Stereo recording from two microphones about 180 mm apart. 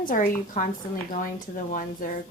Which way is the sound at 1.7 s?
45° left (ahead or behind).